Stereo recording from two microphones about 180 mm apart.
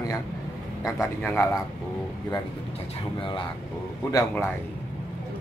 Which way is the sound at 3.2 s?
30° left (ahead or behind).